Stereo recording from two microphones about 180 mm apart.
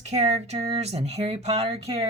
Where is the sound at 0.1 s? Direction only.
35° right (ahead or behind).